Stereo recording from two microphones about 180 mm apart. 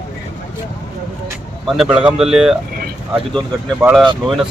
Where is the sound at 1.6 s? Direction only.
5° right (ahead or behind).